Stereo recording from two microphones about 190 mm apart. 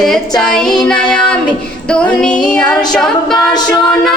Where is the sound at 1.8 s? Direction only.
5° left (ahead or behind).